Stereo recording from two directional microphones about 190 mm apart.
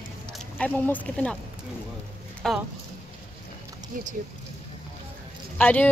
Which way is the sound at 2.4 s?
Centre (ahead or behind).